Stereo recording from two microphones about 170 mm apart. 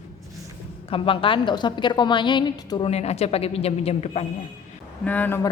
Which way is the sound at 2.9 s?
40° left (ahead or behind).